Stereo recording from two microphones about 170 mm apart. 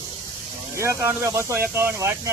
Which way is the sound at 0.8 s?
15° right (ahead or behind).